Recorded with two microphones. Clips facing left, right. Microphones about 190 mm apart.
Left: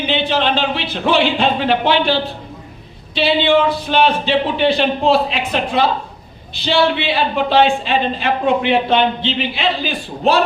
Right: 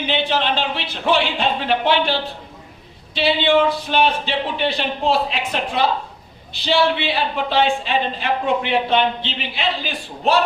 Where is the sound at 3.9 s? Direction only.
90° left.